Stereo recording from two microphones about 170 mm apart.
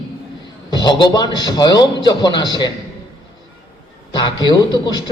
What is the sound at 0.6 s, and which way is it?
A man's voice, 25° left (ahead or behind).